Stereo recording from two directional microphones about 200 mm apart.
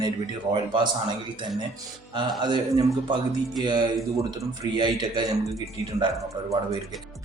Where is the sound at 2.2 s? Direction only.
20° right (ahead or behind).